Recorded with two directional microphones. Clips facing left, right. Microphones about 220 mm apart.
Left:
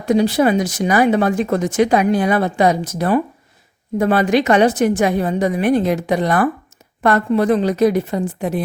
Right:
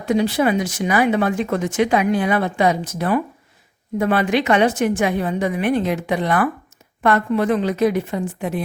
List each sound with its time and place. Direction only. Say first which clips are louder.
0.0 s speech: left 3 dB; 40° left (ahead or behind)